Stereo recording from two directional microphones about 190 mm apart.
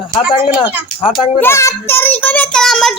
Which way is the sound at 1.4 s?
15° left (ahead or behind).